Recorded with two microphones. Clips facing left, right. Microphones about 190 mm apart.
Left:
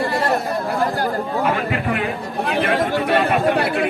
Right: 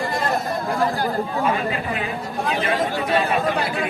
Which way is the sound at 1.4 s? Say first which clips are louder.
Left 3 dB; 65° left (ahead or behind).